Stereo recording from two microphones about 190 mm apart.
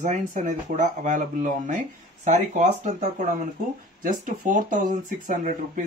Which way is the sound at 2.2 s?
40° right (ahead or behind).